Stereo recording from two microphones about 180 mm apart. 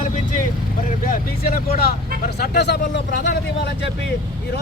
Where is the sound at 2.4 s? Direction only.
65° left (ahead or behind).